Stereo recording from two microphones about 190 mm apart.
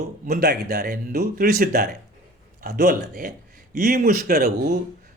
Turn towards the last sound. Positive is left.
turn(degrees=-50)  # may be behind; listen again after turning